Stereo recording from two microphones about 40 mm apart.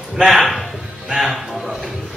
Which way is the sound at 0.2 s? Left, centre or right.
Centre.